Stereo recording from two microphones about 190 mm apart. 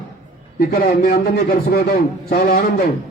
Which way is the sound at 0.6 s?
50° left (ahead or behind).